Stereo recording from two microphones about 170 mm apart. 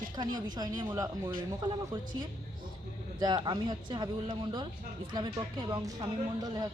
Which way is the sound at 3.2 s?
25° right (ahead or behind).